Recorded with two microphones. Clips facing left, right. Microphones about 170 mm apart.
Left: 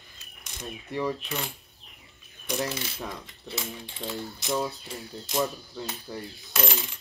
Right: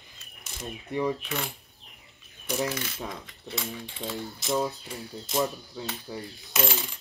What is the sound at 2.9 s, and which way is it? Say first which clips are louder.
Coin: even; centre (ahead or behind).